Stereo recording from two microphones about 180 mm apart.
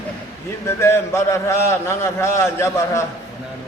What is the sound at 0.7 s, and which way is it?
A man's voice, 15° left (ahead or behind).